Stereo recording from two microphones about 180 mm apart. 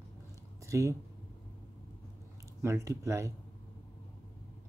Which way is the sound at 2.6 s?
15° right (ahead or behind).